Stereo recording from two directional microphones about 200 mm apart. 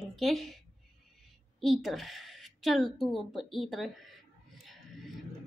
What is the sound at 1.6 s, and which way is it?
Speech, centre (ahead or behind).